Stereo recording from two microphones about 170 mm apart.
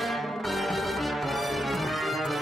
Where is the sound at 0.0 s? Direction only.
Centre (ahead or behind).